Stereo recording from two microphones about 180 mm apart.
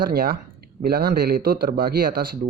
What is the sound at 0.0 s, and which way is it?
Speech, 55° right (ahead or behind).